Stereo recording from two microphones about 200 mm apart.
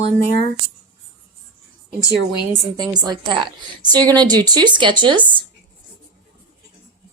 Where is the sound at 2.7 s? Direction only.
20° right (ahead or behind).